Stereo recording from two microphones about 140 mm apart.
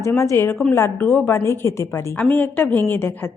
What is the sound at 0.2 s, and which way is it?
A woman's voice, 20° left (ahead or behind).